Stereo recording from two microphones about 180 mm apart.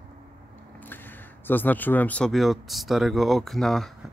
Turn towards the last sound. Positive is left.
turn(degrees=0)  # may be behind; listen again after turning